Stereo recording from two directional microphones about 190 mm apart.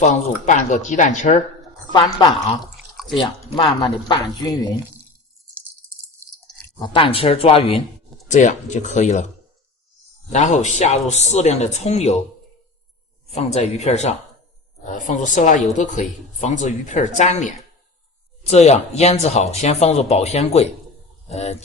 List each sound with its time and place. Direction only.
0.0 s speech: 40° left (ahead or behind)
3.1 s speech: 25° left (ahead or behind)
6.7 s speech: 25° left (ahead or behind)
10.2 s speech: 40° left (ahead or behind)
13.3 s speech: 35° left (ahead or behind)